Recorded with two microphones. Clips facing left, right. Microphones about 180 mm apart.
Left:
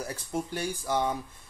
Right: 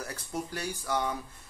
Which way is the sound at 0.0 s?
20° left (ahead or behind).